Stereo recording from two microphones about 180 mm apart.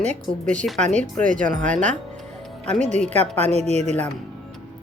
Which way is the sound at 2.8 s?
40° right (ahead or behind).